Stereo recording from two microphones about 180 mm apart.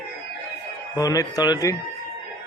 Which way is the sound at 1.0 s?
20° left (ahead or behind).